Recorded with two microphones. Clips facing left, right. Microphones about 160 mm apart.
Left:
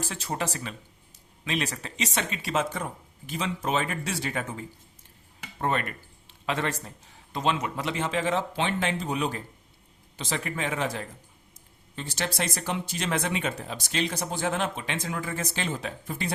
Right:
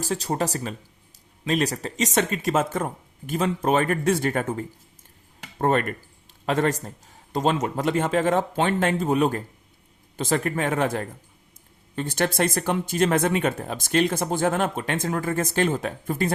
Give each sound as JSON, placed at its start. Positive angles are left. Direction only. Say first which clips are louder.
{"t": 0.0, "sound": "speech", "louder": "right 6 dB", "side_deg": -40}